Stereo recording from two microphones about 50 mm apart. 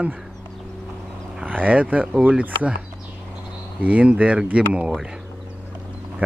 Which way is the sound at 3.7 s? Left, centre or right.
Right.